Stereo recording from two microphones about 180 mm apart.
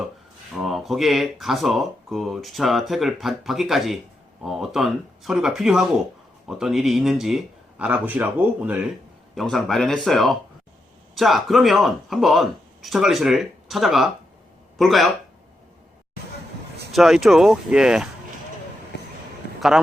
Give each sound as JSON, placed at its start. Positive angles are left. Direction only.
{"t": 0.5, "sound": "speech", "side_deg": 0}
{"t": 16.9, "sound": "speech", "side_deg": 0}
{"t": 18.9, "sound": "a sound", "side_deg": 70}
{"t": 19.5, "sound": "a man's voice", "side_deg": 0}